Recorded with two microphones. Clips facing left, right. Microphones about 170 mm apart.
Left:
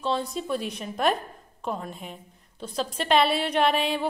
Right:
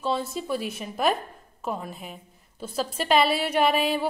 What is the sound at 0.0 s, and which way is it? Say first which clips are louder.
A woman's voice: even; 5° right (ahead or behind).